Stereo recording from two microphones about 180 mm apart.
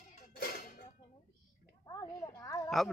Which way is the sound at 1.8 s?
20° left (ahead or behind).